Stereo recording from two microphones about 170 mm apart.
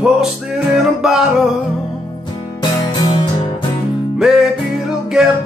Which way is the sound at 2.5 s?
25° left (ahead or behind).